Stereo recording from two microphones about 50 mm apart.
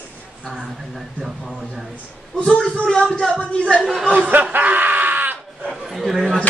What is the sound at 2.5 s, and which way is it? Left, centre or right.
Speech, centre.